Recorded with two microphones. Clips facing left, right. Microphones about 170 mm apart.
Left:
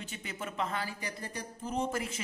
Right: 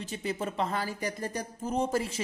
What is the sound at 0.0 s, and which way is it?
Speech, 35° right (ahead or behind).